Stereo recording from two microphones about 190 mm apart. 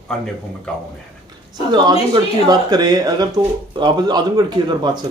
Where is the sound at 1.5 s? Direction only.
20° right (ahead or behind).